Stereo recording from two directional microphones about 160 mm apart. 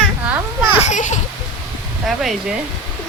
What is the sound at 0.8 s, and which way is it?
Children playing, 50° left (ahead or behind).